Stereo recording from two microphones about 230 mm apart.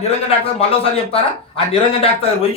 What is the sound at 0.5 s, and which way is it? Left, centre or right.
A man's voice, left.